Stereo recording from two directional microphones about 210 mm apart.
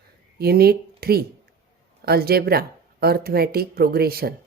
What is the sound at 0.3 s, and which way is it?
Speech, 45° right (ahead or behind).